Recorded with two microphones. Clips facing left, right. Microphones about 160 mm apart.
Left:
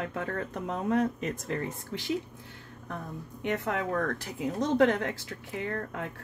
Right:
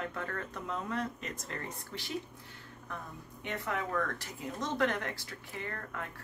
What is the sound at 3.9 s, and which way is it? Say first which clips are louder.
Speech: left 5 dB; 45° left (ahead or behind).